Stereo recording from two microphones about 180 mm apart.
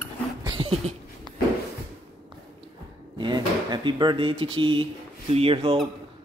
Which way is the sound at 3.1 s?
25° right (ahead or behind).